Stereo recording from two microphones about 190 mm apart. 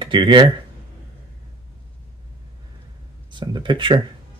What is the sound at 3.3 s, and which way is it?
Speech, 25° right (ahead or behind).